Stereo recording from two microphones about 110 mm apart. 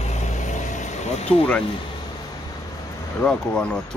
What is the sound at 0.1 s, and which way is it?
Vehicle, 90° left.